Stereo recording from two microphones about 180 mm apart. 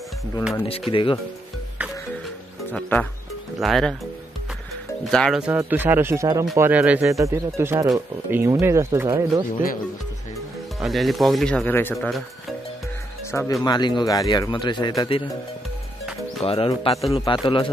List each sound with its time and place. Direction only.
0.7 s speech: 30° left (ahead or behind)
2.7 s speech: 10° left (ahead or behind)
5.0 s speech: centre (ahead or behind); by 9.4 s 15° right (ahead or behind)
10.8 s speech: centre (ahead or behind)
11.9 s speech: centre (ahead or behind)
13.3 s speech: 15° left (ahead or behind)
13.7 s speech: 25° left (ahead or behind)
16.4 s speech: 30° left (ahead or behind)